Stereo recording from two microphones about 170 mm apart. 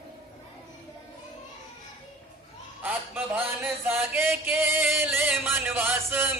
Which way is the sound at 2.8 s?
10° right (ahead or behind).